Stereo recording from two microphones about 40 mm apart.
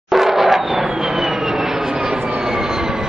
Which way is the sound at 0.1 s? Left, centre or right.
Centre.